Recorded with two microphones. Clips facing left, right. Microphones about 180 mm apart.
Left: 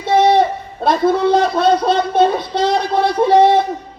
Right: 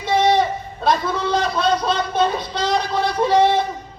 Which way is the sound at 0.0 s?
55° left (ahead or behind).